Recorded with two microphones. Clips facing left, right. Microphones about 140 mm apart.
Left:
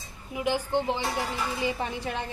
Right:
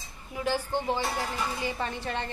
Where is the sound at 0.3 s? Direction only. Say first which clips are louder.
Left 2 dB; 15° left (ahead or behind).